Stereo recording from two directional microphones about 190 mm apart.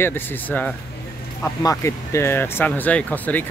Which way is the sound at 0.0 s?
10° left (ahead or behind).